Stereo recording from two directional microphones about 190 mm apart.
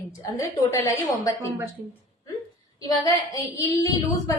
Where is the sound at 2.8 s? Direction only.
20° left (ahead or behind).